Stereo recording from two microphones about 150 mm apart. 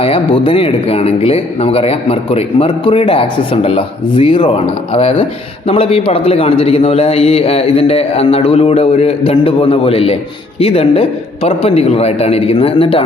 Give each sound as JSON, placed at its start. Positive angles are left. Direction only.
{"t": 0.0, "sound": "speech", "side_deg": 35}